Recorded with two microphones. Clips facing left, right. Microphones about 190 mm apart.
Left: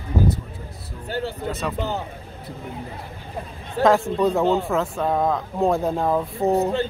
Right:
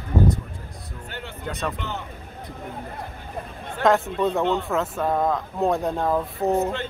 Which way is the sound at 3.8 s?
Centre (ahead or behind).